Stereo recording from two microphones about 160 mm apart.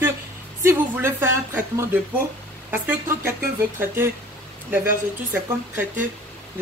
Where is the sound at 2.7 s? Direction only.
10° right (ahead or behind).